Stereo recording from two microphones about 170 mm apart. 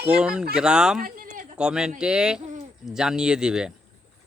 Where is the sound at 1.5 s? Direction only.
5° right (ahead or behind).